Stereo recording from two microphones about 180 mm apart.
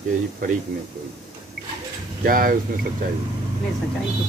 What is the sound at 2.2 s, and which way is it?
Speech, 50° right (ahead or behind).